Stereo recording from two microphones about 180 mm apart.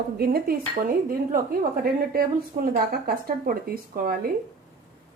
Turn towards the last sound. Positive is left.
turn(degrees=-50)  # may be behind; listen again after turning